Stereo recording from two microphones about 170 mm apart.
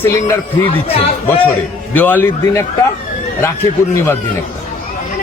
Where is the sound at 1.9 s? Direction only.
10° left (ahead or behind).